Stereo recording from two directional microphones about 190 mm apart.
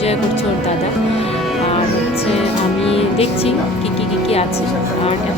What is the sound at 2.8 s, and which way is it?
Speech, 30° left (ahead or behind).